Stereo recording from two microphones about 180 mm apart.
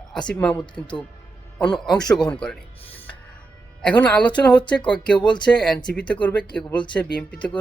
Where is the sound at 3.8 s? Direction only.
5° left (ahead or behind).